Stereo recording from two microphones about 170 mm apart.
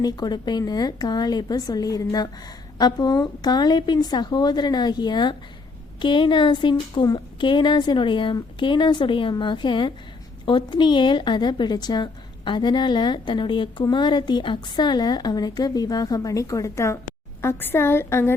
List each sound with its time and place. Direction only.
0.0 s a woman's voice: 25° left (ahead or behind)